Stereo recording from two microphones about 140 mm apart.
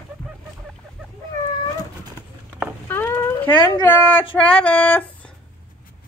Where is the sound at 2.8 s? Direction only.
15° left (ahead or behind).